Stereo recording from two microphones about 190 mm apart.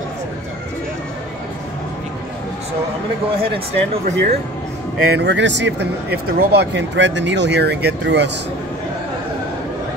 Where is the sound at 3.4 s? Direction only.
30° right (ahead or behind).